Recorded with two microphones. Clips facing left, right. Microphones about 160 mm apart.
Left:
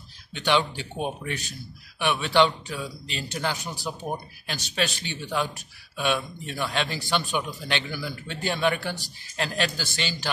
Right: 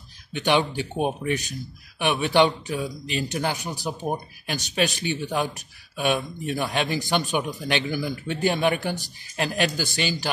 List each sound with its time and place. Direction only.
0.3 s speech: 15° right (ahead or behind)